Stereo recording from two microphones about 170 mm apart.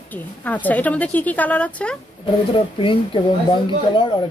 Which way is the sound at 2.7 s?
30° left (ahead or behind).